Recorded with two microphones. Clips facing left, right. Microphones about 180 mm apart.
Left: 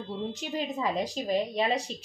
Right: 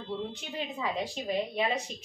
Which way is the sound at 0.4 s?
40° left (ahead or behind).